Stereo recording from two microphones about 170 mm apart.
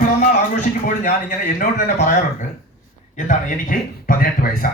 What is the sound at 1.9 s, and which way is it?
Speech, 45° left (ahead or behind).